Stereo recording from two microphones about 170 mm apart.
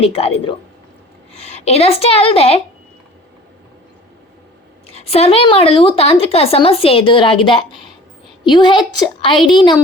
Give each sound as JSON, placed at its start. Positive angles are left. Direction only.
{"t": 0.0, "sound": "a woman's voice", "side_deg": 35}
{"t": 4.9, "sound": "a woman's voice", "side_deg": 35}